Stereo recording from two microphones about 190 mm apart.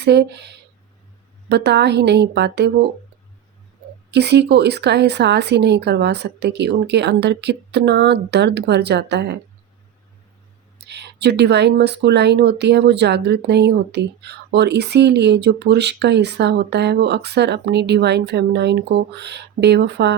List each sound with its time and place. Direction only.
0.0 s speech: 60° right (ahead or behind)
4.1 s speech: 60° right (ahead or behind)
10.8 s speech: 60° right (ahead or behind)